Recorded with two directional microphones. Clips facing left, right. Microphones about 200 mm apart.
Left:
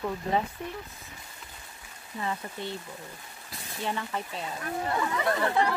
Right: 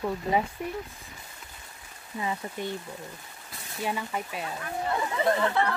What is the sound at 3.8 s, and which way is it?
Speech, 10° right (ahead or behind).